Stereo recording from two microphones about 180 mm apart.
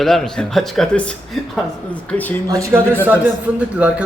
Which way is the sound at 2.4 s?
20° right (ahead or behind).